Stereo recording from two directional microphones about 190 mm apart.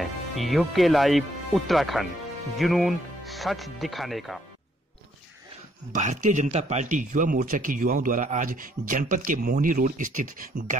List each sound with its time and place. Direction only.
0.0 s speech: centre (ahead or behind)
5.9 s speech: 40° right (ahead or behind)